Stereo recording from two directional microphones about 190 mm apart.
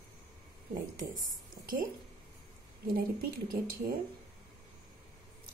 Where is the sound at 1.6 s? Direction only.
45° right (ahead or behind).